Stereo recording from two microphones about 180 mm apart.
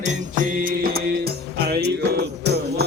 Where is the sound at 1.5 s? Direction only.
65° right (ahead or behind).